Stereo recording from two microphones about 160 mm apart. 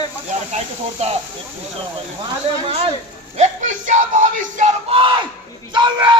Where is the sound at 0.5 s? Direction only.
40° right (ahead or behind).